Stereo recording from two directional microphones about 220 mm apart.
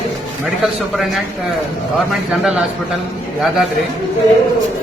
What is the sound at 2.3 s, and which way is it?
Speech, 5° right (ahead or behind).